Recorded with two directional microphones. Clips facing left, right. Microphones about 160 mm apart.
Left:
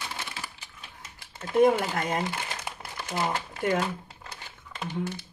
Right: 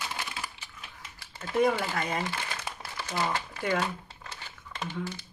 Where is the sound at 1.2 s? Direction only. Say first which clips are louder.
Left 5 dB; 20° left (ahead or behind).